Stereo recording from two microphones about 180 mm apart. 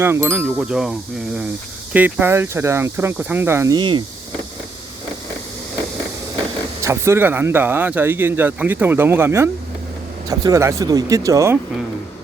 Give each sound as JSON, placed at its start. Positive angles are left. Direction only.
{"t": 0.0, "sound": "speech", "side_deg": -15}
{"t": 6.8, "sound": "speech", "side_deg": -15}